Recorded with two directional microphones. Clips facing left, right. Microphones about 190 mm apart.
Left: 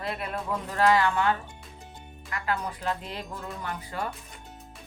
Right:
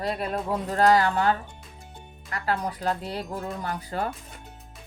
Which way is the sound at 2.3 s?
35° right (ahead or behind).